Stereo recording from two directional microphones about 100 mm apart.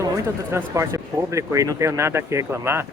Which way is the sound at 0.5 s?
30° right (ahead or behind).